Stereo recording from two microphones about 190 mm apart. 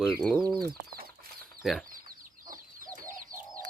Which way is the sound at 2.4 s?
45° right (ahead or behind).